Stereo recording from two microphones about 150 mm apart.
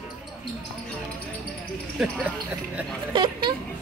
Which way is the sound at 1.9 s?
5° left (ahead or behind).